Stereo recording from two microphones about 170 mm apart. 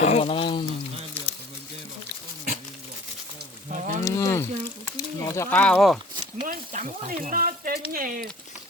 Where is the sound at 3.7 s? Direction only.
45° right (ahead or behind).